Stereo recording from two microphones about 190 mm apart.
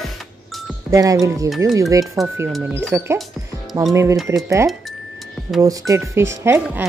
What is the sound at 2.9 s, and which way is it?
Speech, 15° right (ahead or behind).